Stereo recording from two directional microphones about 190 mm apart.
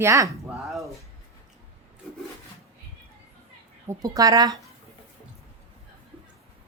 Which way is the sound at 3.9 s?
20° right (ahead or behind).